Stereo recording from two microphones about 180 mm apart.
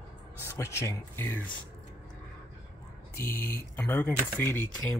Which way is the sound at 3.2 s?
10° left (ahead or behind).